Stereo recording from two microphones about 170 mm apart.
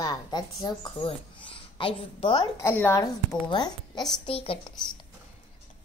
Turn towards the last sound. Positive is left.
turn(degrees=35)  # may be behind; listen again after turning